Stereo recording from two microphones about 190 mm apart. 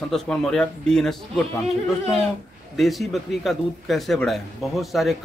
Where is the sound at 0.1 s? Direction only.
5° left (ahead or behind).